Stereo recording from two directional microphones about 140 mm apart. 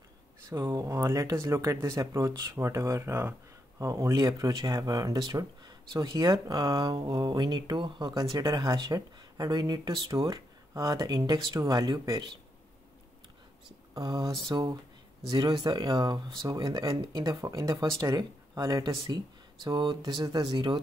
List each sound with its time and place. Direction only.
0.5 s speech: 20° right (ahead or behind)
13.9 s speech: 30° right (ahead or behind)